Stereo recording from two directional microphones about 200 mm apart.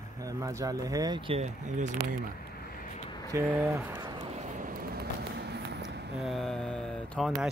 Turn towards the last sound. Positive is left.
turn(degrees=5)  # may be behind; listen again after turning